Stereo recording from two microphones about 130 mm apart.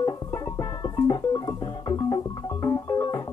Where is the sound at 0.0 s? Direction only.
30° left (ahead or behind).